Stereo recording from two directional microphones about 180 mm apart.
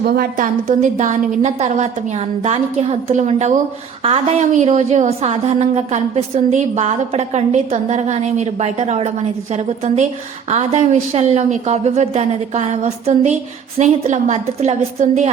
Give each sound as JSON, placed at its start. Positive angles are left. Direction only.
{"t": 0.0, "sound": "a woman's voice", "side_deg": -55}